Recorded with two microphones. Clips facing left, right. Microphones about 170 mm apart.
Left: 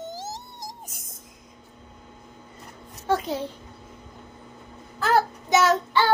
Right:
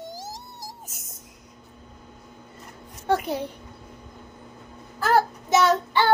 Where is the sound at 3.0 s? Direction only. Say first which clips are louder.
Right 1 dB; 15° right (ahead or behind).